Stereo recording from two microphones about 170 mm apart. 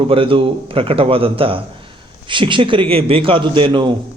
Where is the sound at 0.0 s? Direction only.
30° right (ahead or behind).